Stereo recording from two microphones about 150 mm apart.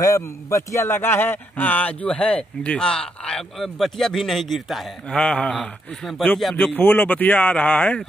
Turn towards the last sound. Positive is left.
turn(degrees=10)  # may be behind; listen again after turning